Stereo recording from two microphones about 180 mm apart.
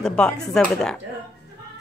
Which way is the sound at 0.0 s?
5° left (ahead or behind).